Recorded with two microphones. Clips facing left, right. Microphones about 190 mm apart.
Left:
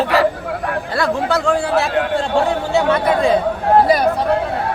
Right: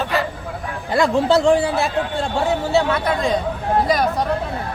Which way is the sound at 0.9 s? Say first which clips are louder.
Right 4 dB; 20° right (ahead or behind).